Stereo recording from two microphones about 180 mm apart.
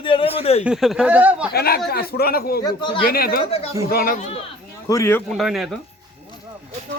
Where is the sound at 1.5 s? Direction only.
60° left (ahead or behind).